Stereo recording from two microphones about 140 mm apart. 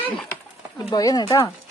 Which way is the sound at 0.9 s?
30° left (ahead or behind).